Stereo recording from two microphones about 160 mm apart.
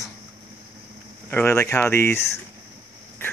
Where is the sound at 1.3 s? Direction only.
15° left (ahead or behind).